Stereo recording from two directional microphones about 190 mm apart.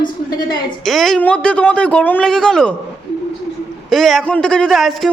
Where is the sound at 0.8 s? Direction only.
Centre (ahead or behind).